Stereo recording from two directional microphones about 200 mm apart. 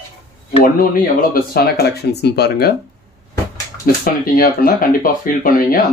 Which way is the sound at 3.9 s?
45° left (ahead or behind).